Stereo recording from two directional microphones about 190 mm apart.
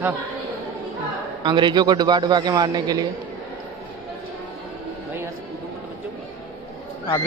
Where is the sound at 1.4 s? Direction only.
25° right (ahead or behind).